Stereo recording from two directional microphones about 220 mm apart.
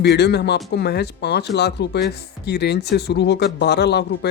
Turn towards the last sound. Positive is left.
turn(degrees=50)  # may be behind; listen again after turning